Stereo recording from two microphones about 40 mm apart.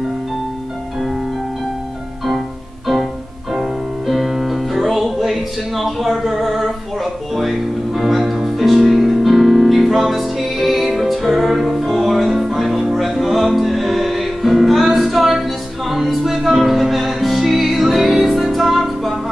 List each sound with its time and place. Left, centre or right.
4.1 s music: centre
6.1 s a sound: centre
7.3 s music: centre